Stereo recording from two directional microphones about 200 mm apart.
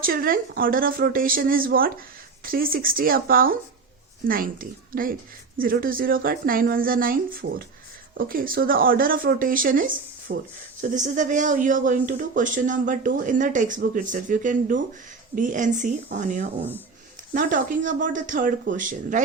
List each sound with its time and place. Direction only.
0.0 s speech: 45° right (ahead or behind)